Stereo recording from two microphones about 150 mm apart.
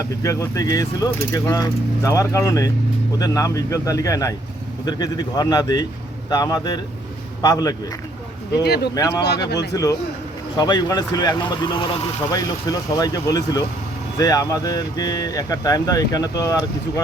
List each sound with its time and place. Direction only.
0.2 s speech: 20° left (ahead or behind)
8.6 s speech: 90° left
9.7 s speech: 25° left (ahead or behind)